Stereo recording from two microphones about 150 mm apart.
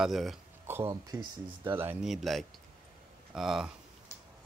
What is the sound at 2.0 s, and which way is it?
Speech, centre (ahead or behind).